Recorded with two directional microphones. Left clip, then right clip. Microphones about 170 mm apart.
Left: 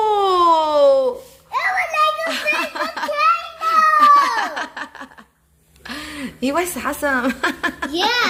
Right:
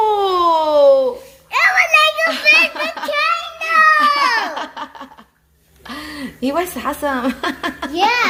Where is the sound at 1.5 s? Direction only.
30° right (ahead or behind).